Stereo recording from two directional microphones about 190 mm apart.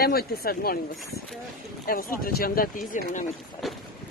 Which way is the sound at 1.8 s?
50° left (ahead or behind).